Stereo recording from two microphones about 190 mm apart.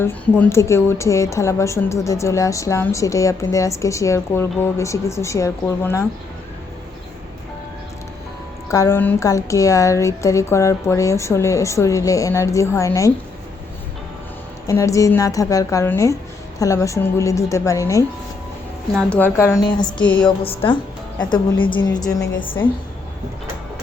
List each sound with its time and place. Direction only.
0.0 s a woman's voice: 15° left (ahead or behind)
8.7 s a woman's voice: 15° left (ahead or behind)
14.7 s a woman's voice: 15° left (ahead or behind)